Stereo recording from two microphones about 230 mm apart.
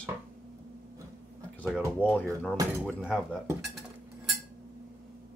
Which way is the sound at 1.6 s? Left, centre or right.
Centre.